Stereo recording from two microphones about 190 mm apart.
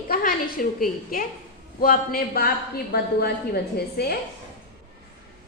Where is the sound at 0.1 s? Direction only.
50° left (ahead or behind).